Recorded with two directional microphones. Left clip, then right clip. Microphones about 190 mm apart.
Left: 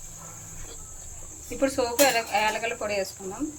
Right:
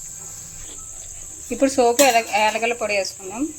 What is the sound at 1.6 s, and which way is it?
Speech, 45° right (ahead or behind).